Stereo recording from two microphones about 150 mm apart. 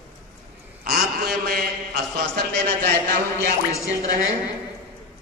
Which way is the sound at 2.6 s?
90° right.